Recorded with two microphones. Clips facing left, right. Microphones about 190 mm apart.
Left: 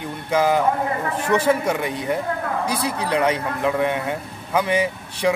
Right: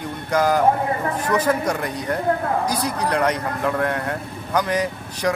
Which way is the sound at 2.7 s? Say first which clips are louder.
Right 1 dB; 30° left (ahead or behind).